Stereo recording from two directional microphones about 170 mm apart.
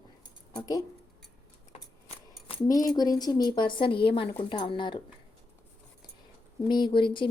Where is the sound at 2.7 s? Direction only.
20° left (ahead or behind).